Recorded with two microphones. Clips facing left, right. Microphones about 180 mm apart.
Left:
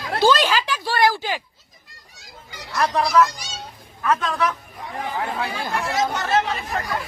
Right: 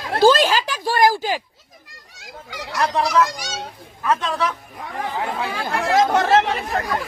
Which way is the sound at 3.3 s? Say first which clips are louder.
Right 6 dB; 90° right.